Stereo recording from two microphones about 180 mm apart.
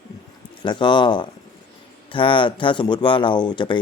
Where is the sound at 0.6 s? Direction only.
25° left (ahead or behind).